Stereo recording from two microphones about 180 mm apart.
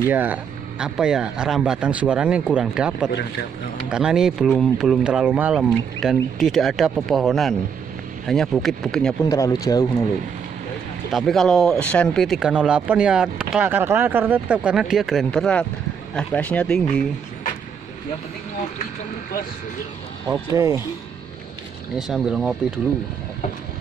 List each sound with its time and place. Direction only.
0.1 s speech: 10° right (ahead or behind)
3.1 s a man's voice: 75° left (ahead or behind)
3.9 s speech: 5° right (ahead or behind)
9.3 s speech: 20° left (ahead or behind)
11.1 s speech: centre (ahead or behind)
20.2 s speech: 20° right (ahead or behind)
21.9 s speech: centre (ahead or behind)